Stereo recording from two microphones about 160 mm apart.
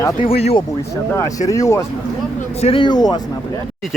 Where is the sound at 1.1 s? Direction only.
20° left (ahead or behind).